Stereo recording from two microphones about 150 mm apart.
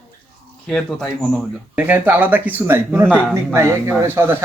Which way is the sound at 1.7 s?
10° right (ahead or behind).